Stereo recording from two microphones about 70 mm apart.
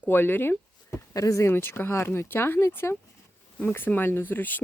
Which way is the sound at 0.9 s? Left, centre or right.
Left.